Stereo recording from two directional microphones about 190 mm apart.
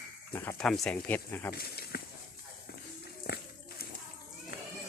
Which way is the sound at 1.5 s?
55° left (ahead or behind).